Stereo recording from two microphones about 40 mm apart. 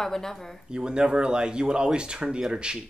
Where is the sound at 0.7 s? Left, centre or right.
Right.